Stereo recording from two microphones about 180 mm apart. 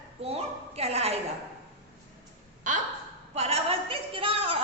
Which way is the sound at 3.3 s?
35° right (ahead or behind).